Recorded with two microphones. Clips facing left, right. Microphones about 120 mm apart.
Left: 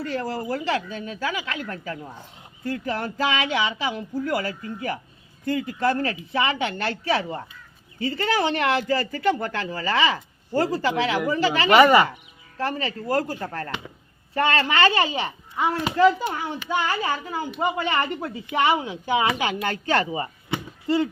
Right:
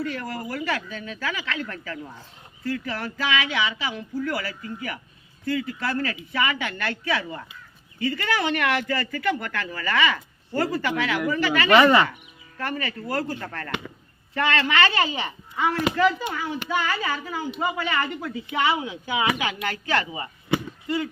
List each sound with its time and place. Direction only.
0.0 s speech: 30° left (ahead or behind)
3.0 s speech: 35° left (ahead or behind)
11.8 s speech: 15° left (ahead or behind)
12.5 s speech: 30° left (ahead or behind)
15.1 s speech: 20° left (ahead or behind)
16.6 s speech: 20° left (ahead or behind)
17.0 s speech: 30° left (ahead or behind)